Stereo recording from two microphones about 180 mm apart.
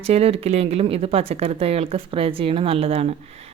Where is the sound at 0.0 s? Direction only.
35° right (ahead or behind).